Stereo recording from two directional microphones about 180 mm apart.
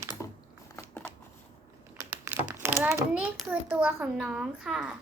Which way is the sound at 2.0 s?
10° right (ahead or behind).